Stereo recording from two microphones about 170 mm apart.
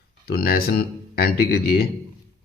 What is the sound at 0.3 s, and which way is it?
A man's voice, 60° left (ahead or behind).